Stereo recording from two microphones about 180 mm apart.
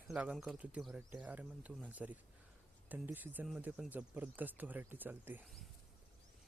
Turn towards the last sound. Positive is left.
turn(degrees=-10)  # may be behind; listen again after turning